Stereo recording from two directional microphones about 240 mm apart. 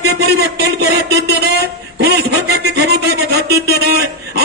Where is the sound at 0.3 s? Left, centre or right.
Right.